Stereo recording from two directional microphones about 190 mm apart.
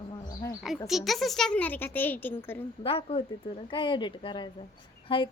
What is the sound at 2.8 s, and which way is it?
A woman's voice, 30° left (ahead or behind).